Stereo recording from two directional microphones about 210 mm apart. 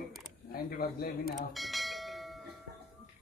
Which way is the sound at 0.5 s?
45° left (ahead or behind).